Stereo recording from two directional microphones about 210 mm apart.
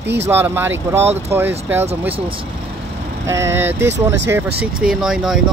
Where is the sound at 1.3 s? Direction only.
10° right (ahead or behind).